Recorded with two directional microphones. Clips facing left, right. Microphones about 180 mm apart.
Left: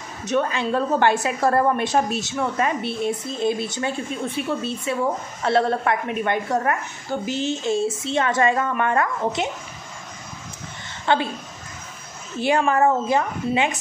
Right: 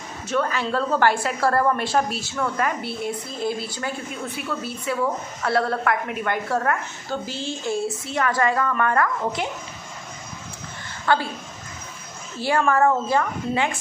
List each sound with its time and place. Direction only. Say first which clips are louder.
0.3 s a woman's voice: left 2 dB; 20° left (ahead or behind)
11.1 s a woman's voice: left 1 dB; 20° left (ahead or behind)
12.4 s a woman's voice: left 1 dB; 20° left (ahead or behind)